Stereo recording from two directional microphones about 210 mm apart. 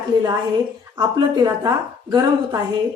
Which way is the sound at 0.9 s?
20° right (ahead or behind).